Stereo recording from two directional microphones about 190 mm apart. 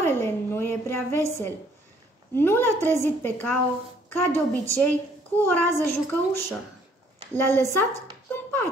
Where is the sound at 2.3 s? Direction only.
10° left (ahead or behind).